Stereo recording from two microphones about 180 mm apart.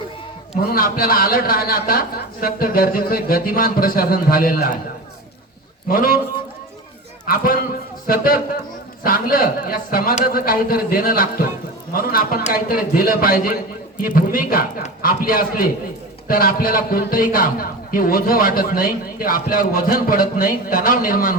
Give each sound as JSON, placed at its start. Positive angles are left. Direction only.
{"t": 0.7, "sound": "a man's voice", "side_deg": 55}
{"t": 5.9, "sound": "a man's voice", "side_deg": 55}
{"t": 7.3, "sound": "a man's voice", "side_deg": 55}